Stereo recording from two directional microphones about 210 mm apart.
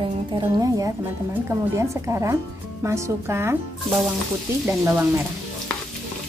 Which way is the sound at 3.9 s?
Centre (ahead or behind).